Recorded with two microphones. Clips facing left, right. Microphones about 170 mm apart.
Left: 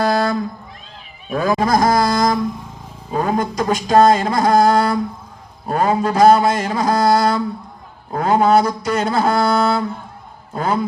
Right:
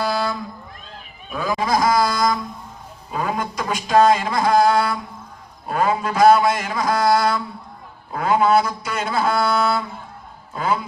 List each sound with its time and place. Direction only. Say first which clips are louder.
0.1 s cat: left 5 dB; 45° left (ahead or behind)
1.3 s fowl: left 5 dB; 45° left (ahead or behind)
3.1 s a sound: left 5 dB; 35° left (ahead or behind)
10.5 s fowl: left 2 dB; 40° left (ahead or behind)